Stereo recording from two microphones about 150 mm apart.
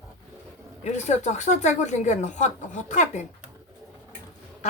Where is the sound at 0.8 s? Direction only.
50° left (ahead or behind).